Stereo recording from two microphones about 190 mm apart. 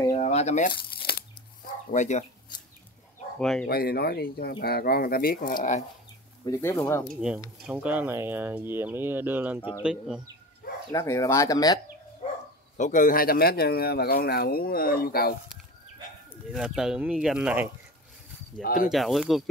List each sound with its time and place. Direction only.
0.1 s crumpling: 35° left (ahead or behind); by 1.1 s 50° left (ahead or behind)
1.9 s speech: 40° left (ahead or behind)
3.3 s speech: 5° left (ahead or behind)
3.6 s speech: 55° left (ahead or behind)
6.4 s speech: 15° left (ahead or behind)
7.2 s speech: 5° right (ahead or behind)
10.9 s speech: 15° left (ahead or behind)
12.2 s bow-wow: 40° left (ahead or behind)
12.7 s speech: 40° left (ahead or behind)
16.5 s speech: 5° right (ahead or behind)
18.6 s speech: 50° left (ahead or behind)
18.9 s speech: centre (ahead or behind)